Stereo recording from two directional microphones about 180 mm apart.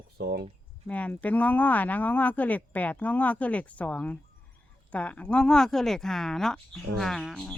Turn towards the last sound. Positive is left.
turn(degrees=0)  # may be behind; listen again after turning